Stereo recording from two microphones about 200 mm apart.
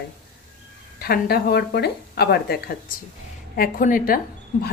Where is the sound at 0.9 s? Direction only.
50° left (ahead or behind).